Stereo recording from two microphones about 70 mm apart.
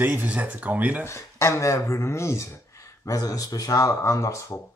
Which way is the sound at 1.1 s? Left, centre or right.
Left.